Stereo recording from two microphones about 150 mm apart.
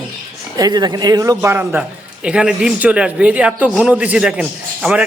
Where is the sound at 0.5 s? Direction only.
25° right (ahead or behind).